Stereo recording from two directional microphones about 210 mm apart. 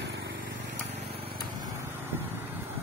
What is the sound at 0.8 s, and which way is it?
Vehicle, 25° right (ahead or behind).